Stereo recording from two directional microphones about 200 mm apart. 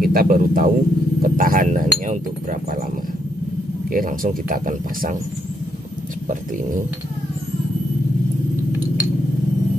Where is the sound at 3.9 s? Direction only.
45° right (ahead or behind).